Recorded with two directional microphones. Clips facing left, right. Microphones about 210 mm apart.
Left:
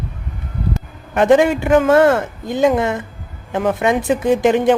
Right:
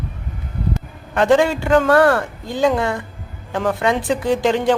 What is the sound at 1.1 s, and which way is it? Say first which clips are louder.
Speech: left 3 dB; 20° left (ahead or behind).